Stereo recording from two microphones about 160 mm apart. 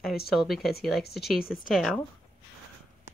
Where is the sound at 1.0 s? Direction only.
85° left.